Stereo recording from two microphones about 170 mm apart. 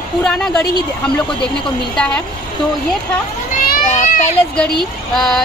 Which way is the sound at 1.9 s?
5° left (ahead or behind).